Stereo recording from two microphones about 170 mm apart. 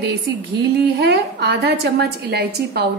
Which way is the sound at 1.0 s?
75° right (ahead or behind).